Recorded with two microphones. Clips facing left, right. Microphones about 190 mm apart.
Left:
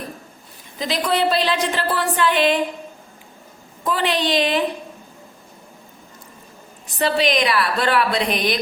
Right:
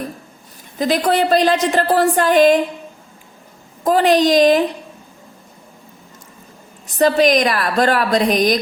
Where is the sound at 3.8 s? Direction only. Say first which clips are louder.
Right 8 dB; 45° right (ahead or behind).